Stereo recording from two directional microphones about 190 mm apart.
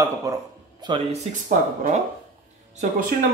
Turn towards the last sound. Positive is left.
turn(degrees=-45)  # may be behind; listen again after turning